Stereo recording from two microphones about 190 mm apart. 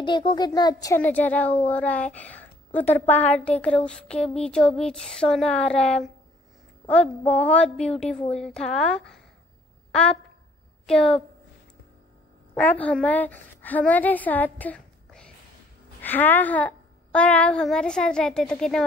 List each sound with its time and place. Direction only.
0.0 s a child's voice: 25° left (ahead or behind); by 6.0 s 5° left (ahead or behind)
7.4 s a child's voice: 5° left (ahead or behind)
10.9 s a child's voice: 5° left (ahead or behind)
12.5 s a woman's voice: 10° left (ahead or behind)